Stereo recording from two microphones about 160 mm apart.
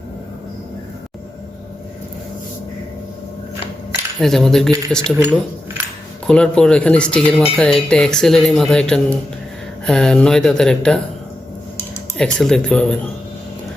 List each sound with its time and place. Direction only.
4.2 s speech: centre (ahead or behind)
6.2 s speech: 5° left (ahead or behind)
12.1 s speech: centre (ahead or behind)